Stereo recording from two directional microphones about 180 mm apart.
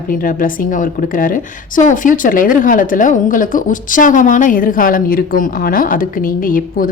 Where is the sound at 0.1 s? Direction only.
50° left (ahead or behind).